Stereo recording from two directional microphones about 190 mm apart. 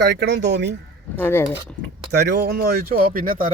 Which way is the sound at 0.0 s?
65° right (ahead or behind).